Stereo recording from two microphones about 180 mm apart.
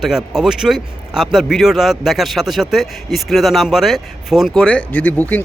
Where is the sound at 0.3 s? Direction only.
5° right (ahead or behind).